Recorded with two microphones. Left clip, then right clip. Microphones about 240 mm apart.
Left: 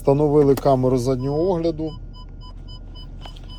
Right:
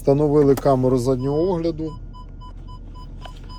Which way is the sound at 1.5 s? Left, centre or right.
Centre.